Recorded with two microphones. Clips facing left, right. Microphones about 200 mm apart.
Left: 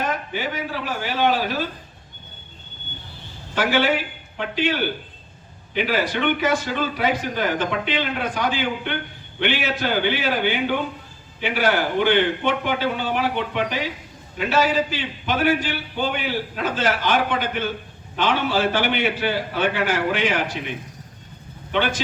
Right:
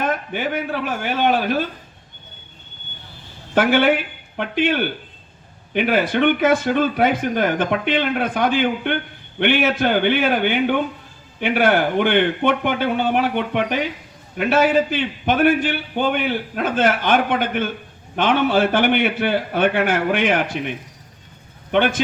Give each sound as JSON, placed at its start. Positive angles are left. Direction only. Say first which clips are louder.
{"t": 0.0, "sound": "a man's voice", "louder": "right 3 dB", "side_deg": -55}
{"t": 3.5, "sound": "a man's voice", "louder": "right 4 dB", "side_deg": -55}
{"t": 21.7, "sound": "a man's voice", "louder": "right 5 dB", "side_deg": -55}